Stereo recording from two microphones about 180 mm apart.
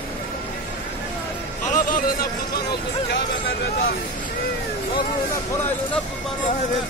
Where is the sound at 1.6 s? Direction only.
45° left (ahead or behind).